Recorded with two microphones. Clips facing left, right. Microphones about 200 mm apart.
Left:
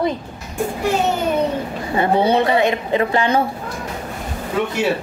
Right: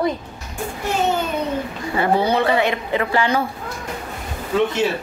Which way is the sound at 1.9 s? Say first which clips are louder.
Left 2 dB; 20° left (ahead or behind).